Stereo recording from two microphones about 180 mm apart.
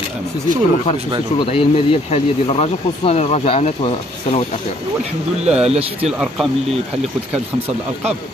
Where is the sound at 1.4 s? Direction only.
30° left (ahead or behind).